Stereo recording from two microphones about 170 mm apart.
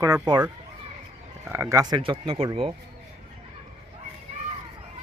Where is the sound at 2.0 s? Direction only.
35° right (ahead or behind).